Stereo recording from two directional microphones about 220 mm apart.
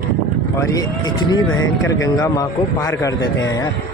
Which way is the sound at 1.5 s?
65° left (ahead or behind).